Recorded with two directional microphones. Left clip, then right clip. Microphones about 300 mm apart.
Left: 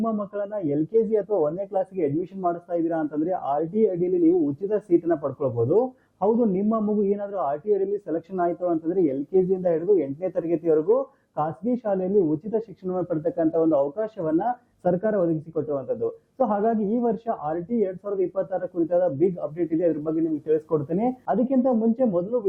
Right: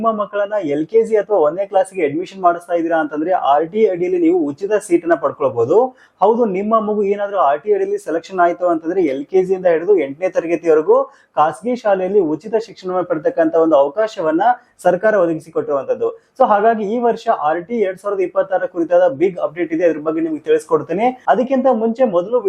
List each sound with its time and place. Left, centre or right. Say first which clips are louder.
0.0 s speech: right 11 dB; centre
5.7 s speech: right 8 dB; centre
12.5 s speech: right 8 dB; centre